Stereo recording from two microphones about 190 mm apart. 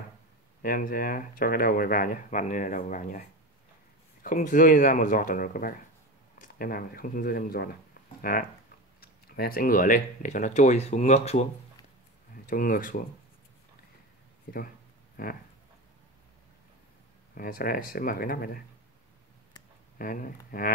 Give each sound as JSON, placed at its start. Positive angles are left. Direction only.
{"t": 0.6, "sound": "speech", "side_deg": 50}
{"t": 12.4, "sound": "speech", "side_deg": 45}
{"t": 14.5, "sound": "speech", "side_deg": 55}
{"t": 17.4, "sound": "speech", "side_deg": 50}
{"t": 20.0, "sound": "speech", "side_deg": 50}